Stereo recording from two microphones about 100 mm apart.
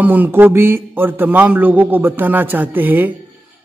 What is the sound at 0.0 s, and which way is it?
A man's voice, 15° right (ahead or behind).